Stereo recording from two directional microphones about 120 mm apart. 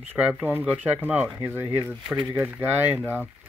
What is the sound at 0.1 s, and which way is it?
Speech, 15° right (ahead or behind).